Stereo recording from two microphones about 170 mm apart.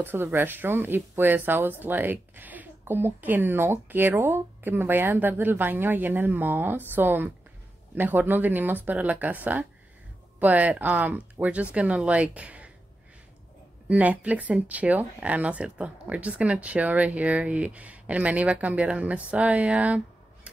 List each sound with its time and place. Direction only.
0.0 s speech: 10° right (ahead or behind)
13.8 s speech: 10° right (ahead or behind)